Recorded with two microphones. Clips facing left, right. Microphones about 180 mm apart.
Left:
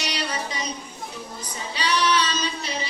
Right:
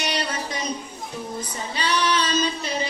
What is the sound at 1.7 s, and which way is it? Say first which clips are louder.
Female singing: left 1 dB; 50° right (ahead or behind).